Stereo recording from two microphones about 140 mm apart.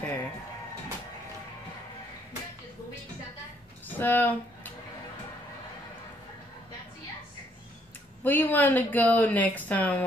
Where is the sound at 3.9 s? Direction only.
15° left (ahead or behind).